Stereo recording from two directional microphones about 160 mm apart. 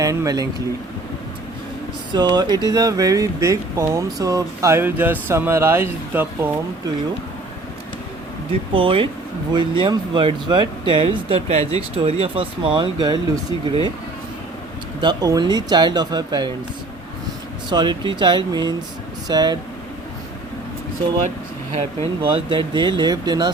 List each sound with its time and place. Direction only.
0.0 s speech: 20° right (ahead or behind)
2.1 s speech: 25° right (ahead or behind)
8.7 s speech: 35° right (ahead or behind)
15.0 s speech: 25° right (ahead or behind)
17.7 s speech: 30° right (ahead or behind)
22.2 s speech: 30° right (ahead or behind)